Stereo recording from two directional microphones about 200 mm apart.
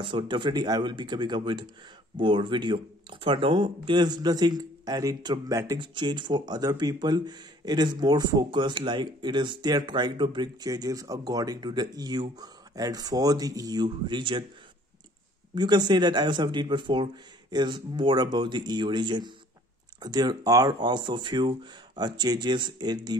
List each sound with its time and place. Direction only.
0.0 s speech: 25° right (ahead or behind)
15.5 s speech: 20° right (ahead or behind)